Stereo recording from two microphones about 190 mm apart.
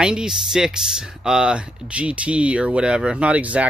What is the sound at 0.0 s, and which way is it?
Speech, 5° right (ahead or behind).